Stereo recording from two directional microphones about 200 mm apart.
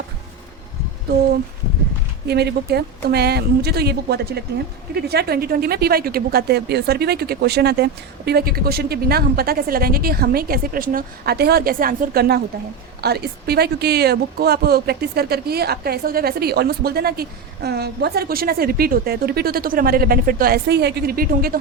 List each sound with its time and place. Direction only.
2.2 s speech: 55° right (ahead or behind)